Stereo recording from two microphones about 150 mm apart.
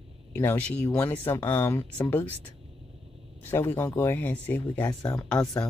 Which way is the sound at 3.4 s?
15° left (ahead or behind).